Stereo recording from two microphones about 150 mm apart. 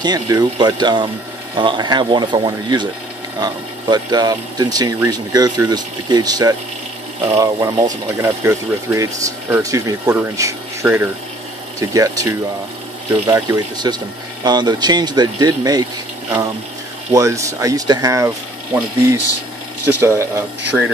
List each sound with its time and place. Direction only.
0.0 s speech: 30° right (ahead or behind)
17.1 s speech: 20° right (ahead or behind)
20.7 s speech: 5° right (ahead or behind)